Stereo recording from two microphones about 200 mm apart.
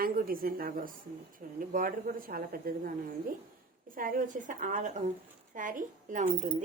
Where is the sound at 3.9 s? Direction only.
45° right (ahead or behind).